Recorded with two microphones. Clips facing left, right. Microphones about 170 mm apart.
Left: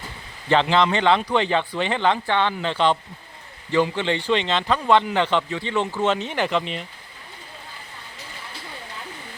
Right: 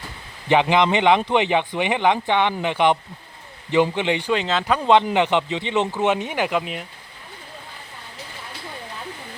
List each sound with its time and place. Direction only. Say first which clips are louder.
0.4 s speech: right 1 dB; 15° right (ahead or behind)
4.4 s speech: right 1 dB; 5° right (ahead or behind)